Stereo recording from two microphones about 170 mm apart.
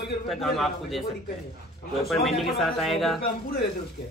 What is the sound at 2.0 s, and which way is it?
A man's voice, centre (ahead or behind).